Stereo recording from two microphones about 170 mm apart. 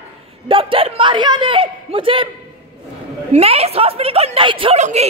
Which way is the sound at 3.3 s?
35° right (ahead or behind).